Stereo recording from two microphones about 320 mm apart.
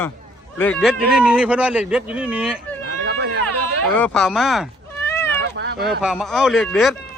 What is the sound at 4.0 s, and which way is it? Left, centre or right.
Cat, centre.